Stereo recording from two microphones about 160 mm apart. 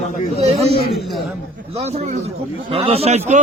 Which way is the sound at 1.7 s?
40° right (ahead or behind).